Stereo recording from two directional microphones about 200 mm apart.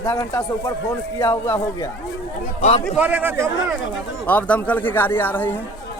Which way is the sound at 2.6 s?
35° left (ahead or behind).